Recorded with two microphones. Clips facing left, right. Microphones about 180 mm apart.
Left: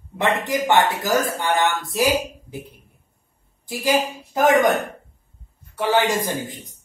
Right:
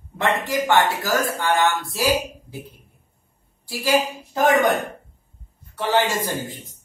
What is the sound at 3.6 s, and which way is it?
Speech, 20° left (ahead or behind).